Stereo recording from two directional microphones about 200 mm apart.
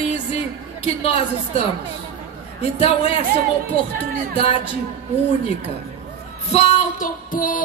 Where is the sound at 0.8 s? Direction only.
30° left (ahead or behind).